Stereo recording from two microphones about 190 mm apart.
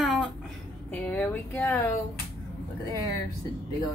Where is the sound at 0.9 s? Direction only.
10° left (ahead or behind).